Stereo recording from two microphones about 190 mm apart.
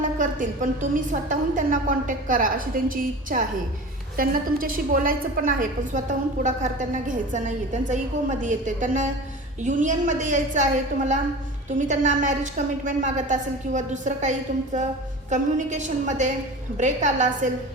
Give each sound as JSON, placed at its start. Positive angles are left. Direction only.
{"t": 0.2, "sound": "a woman's voice", "side_deg": -45}